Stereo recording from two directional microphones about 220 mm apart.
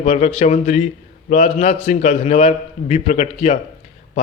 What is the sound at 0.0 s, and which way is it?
A man's voice, 30° left (ahead or behind).